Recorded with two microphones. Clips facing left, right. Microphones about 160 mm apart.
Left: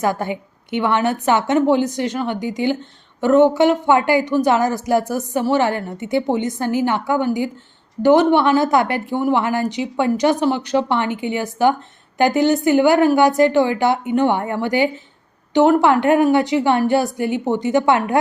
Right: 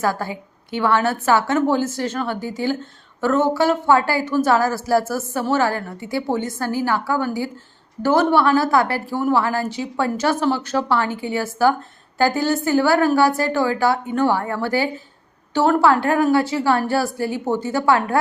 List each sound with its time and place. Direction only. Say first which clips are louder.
0.0 s a woman's voice: left 2 dB; 20° left (ahead or behind)